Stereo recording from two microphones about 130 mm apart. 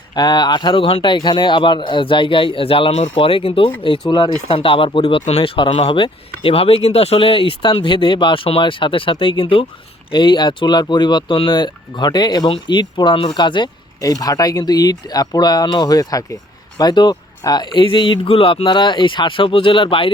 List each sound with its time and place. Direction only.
0.1 s speech: 30° left (ahead or behind)